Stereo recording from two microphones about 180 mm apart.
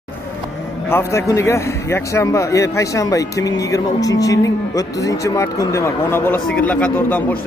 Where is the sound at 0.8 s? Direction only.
15° left (ahead or behind).